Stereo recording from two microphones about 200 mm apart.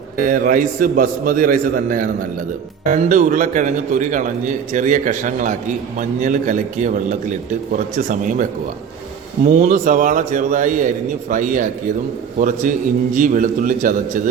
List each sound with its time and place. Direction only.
0.3 s a man's voice: 45° right (ahead or behind)
9.6 s speech: 40° right (ahead or behind)